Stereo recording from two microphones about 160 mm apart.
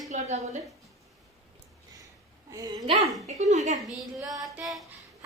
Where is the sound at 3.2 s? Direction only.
45° right (ahead or behind).